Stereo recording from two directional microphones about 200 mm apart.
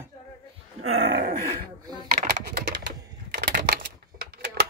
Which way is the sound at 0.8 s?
75° right (ahead or behind).